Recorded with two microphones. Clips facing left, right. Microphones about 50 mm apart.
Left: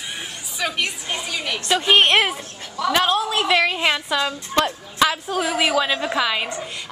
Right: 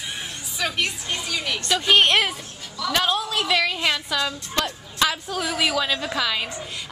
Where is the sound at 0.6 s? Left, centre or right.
Centre; by 4.7 s left.